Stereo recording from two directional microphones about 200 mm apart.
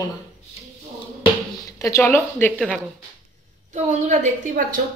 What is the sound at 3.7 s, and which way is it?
Speech, 35° right (ahead or behind).